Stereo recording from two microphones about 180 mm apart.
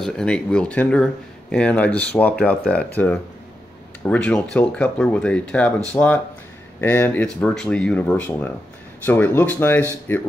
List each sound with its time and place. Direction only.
0.0 s speech: 5° left (ahead or behind)